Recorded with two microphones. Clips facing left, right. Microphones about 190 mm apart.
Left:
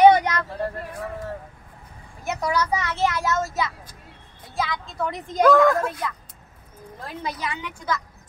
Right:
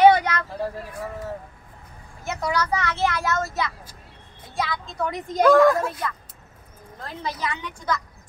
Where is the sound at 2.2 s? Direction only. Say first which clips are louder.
Left 1 dB; 15° left (ahead or behind).